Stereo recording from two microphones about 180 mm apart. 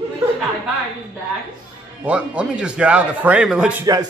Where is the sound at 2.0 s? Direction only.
5° right (ahead or behind).